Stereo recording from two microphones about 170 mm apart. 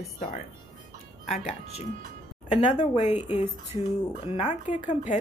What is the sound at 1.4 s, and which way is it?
Speech, 40° left (ahead or behind).